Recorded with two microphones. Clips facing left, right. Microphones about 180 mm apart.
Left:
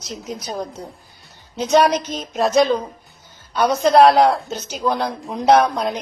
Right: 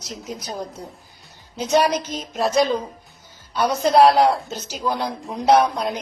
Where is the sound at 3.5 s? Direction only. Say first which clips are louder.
Left 3 dB; 60° left (ahead or behind).